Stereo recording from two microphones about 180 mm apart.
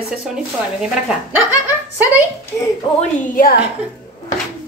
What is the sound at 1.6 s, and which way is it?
Speech, 10° right (ahead or behind).